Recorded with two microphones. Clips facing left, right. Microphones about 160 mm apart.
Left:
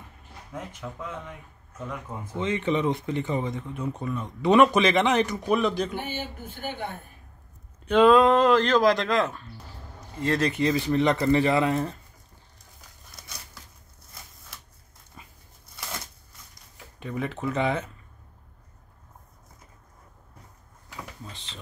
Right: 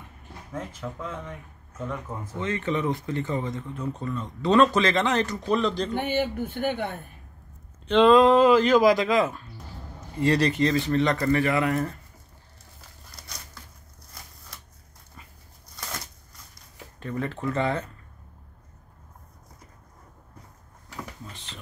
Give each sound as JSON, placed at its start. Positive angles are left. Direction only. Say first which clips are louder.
{"t": 1.9, "sound": "speech", "louder": "right 2 dB", "side_deg": 20}
{"t": 5.9, "sound": "speech", "louder": "right 8 dB", "side_deg": -60}
{"t": 7.8, "sound": "speech", "louder": "right 1 dB", "side_deg": 5}
{"t": 10.2, "sound": "speech", "louder": "right 2 dB", "side_deg": 10}
{"t": 17.0, "sound": "speech", "louder": "right 1 dB", "side_deg": 15}